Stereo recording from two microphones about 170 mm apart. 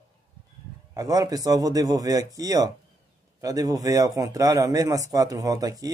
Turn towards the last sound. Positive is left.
turn(degrees=-20)  # may be behind; listen again after turning